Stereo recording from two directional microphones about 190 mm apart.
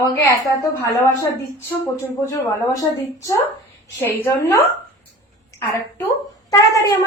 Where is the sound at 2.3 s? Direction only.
20° left (ahead or behind).